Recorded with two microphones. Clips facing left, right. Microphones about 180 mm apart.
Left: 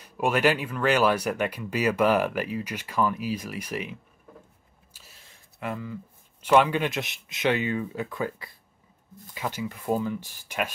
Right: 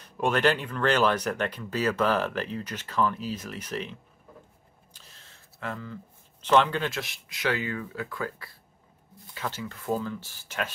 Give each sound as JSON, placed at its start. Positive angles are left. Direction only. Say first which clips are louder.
{"t": 0.0, "sound": "speech", "louder": "left 1 dB", "side_deg": 10}
{"t": 4.9, "sound": "a sound", "louder": "left 1 dB", "side_deg": 10}
{"t": 6.4, "sound": "speech", "louder": "left 2 dB", "side_deg": 10}